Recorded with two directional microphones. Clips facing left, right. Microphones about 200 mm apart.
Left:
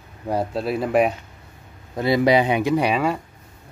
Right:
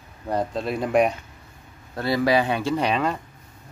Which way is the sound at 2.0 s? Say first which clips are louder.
Left 3 dB; 20° left (ahead or behind).